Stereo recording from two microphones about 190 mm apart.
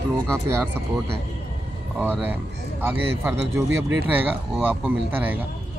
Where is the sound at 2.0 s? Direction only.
10° right (ahead or behind).